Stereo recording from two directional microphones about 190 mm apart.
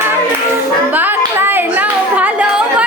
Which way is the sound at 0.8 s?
10° right (ahead or behind).